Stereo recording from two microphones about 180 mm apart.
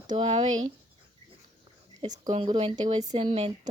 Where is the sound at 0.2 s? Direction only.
30° right (ahead or behind).